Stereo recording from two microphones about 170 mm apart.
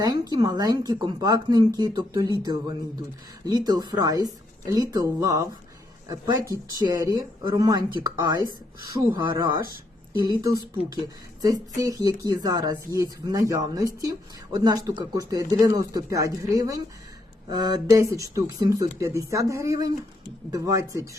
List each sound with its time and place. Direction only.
0.0 s speech: 25° right (ahead or behind)
11.8 s speech: 20° right (ahead or behind)